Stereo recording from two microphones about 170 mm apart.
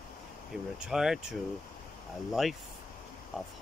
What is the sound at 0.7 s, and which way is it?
Speech, 5° right (ahead or behind).